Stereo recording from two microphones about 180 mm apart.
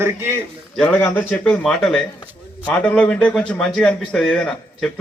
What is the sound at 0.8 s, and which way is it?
A man's voice, 10° left (ahead or behind).